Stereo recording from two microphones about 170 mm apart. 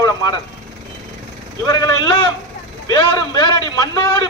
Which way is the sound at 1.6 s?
20° left (ahead or behind).